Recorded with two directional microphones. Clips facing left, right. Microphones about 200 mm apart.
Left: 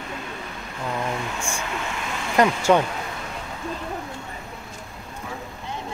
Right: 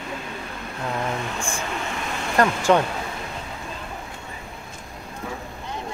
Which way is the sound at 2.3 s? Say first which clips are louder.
Left 1 dB; 10° left (ahead or behind).